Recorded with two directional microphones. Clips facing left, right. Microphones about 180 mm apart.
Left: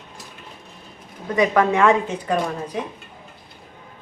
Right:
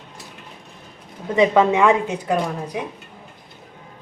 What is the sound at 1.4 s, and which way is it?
A woman's voice, 20° right (ahead or behind).